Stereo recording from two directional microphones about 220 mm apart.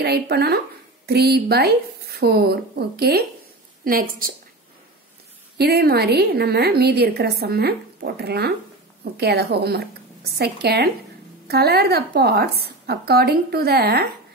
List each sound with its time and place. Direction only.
0.0 s a woman's voice: 45° right (ahead or behind)
5.6 s a woman's voice: 45° right (ahead or behind)